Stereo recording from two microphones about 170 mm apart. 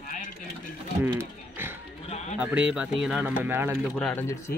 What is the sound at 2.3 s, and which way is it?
Speech, 5° right (ahead or behind).